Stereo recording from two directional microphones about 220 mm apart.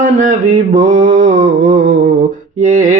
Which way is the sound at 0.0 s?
35° right (ahead or behind).